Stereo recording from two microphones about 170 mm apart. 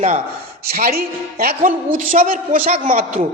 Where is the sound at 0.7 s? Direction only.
60° right (ahead or behind).